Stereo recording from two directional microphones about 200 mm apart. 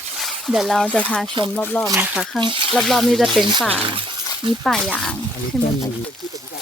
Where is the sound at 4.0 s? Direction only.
25° right (ahead or behind).